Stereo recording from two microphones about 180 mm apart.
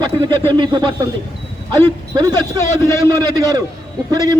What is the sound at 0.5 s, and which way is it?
Speech, 25° right (ahead or behind).